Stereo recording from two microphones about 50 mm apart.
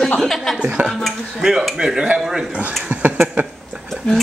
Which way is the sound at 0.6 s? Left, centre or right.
Right.